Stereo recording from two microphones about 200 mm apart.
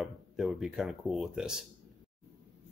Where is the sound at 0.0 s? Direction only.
Centre (ahead or behind).